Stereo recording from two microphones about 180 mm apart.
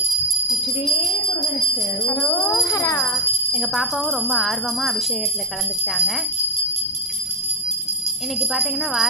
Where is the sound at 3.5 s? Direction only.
Centre (ahead or behind).